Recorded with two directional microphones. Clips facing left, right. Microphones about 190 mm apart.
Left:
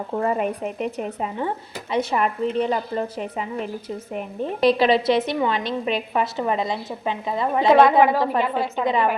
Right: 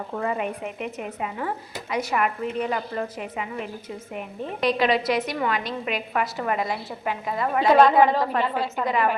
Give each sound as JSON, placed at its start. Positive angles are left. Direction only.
{"t": 0.2, "sound": "a woman's voice", "side_deg": 40}
{"t": 7.6, "sound": "a woman's voice", "side_deg": 10}